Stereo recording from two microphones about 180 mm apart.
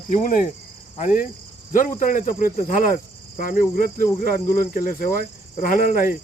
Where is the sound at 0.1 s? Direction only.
50° left (ahead or behind).